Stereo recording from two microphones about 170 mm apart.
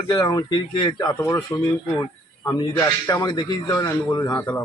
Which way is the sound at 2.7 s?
10° left (ahead or behind).